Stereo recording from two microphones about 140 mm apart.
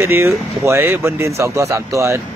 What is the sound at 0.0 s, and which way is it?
Speech, 20° right (ahead or behind).